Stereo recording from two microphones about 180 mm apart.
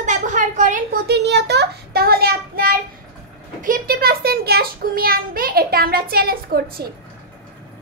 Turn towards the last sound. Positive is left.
turn(degrees=-55)  # may be behind; listen again after turning